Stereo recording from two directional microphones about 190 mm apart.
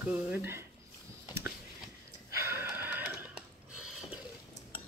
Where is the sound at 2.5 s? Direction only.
10° right (ahead or behind).